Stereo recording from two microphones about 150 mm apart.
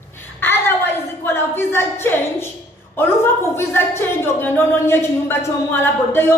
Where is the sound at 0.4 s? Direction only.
15° left (ahead or behind).